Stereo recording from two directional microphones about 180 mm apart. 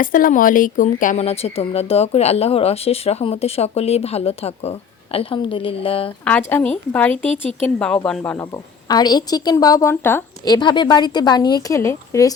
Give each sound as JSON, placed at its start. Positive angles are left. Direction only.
{"t": 0.0, "sound": "speech", "side_deg": 50}
{"t": 6.5, "sound": "a woman's voice", "side_deg": 10}
{"t": 10.5, "sound": "a woman's voice", "side_deg": 25}